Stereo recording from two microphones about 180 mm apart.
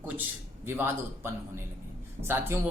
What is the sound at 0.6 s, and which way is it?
Speech, 10° right (ahead or behind).